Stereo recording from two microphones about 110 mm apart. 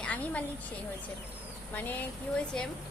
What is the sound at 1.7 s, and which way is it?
Speech, 15° left (ahead or behind).